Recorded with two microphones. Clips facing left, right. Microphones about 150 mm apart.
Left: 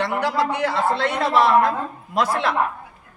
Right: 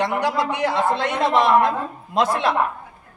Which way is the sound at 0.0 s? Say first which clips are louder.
Even; 20° right (ahead or behind).